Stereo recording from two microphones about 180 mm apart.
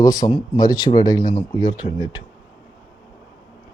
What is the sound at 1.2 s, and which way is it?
Speech, 50° left (ahead or behind).